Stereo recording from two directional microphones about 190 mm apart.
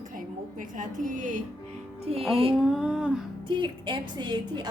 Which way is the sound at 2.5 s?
5° right (ahead or behind).